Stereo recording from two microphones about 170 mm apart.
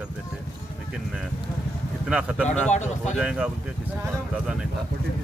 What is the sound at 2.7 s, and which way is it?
Speech, 45° left (ahead or behind).